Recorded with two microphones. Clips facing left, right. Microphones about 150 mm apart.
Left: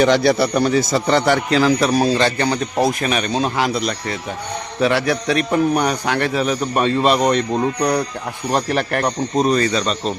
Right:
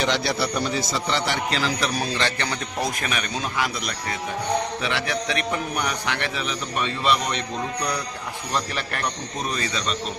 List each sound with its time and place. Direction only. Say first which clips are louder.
0.0 s a man's voice: left 9 dB; 55° left (ahead or behind)
1.8 s a man's voice: left 9 dB; 40° left (ahead or behind)
4.8 s a man's voice: left 9 dB; 45° left (ahead or behind)